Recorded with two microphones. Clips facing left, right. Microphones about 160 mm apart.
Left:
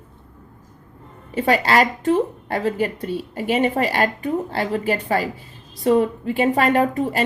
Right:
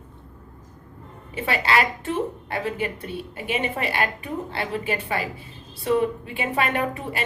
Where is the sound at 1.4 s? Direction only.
40° left (ahead or behind).